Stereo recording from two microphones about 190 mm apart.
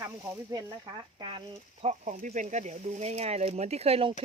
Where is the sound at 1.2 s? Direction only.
25° right (ahead or behind).